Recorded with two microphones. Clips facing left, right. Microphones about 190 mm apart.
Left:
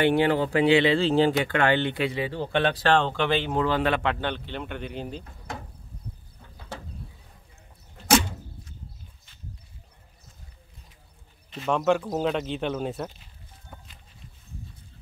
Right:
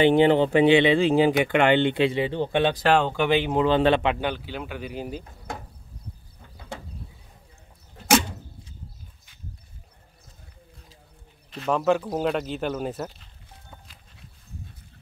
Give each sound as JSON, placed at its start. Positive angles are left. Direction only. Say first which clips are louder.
{"t": 0.0, "sound": "speech", "louder": "right 4 dB", "side_deg": -20}
{"t": 4.1, "sound": "speech", "louder": "right 2 dB", "side_deg": -10}
{"t": 11.5, "sound": "speech", "louder": "right 1 dB", "side_deg": 0}